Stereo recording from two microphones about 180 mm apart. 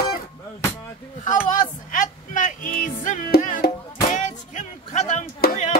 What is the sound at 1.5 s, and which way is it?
Music, 45° left (ahead or behind).